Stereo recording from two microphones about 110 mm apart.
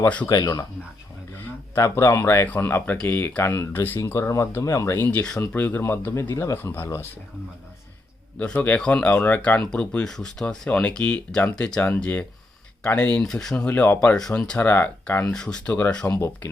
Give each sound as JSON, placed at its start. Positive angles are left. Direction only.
{"t": 0.3, "sound": "speech", "side_deg": 35}
{"t": 5.0, "sound": "speech", "side_deg": 10}
{"t": 8.4, "sound": "speech", "side_deg": 15}
{"t": 13.7, "sound": "speech", "side_deg": 15}